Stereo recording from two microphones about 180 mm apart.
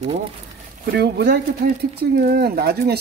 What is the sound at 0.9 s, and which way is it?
Speech, 65° right (ahead or behind).